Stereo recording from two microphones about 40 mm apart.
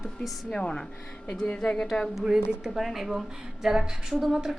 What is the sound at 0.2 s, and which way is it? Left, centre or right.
A woman's voice, left.